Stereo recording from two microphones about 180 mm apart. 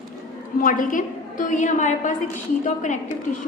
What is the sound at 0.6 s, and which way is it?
A woman's voice, 50° left (ahead or behind).